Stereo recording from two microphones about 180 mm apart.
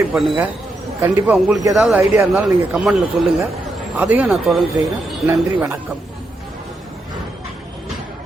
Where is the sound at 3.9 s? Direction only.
10° right (ahead or behind).